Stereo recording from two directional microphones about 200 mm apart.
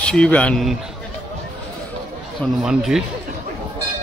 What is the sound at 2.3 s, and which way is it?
Speech, centre (ahead or behind).